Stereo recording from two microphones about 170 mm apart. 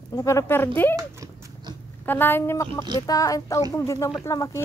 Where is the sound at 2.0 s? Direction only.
10° left (ahead or behind).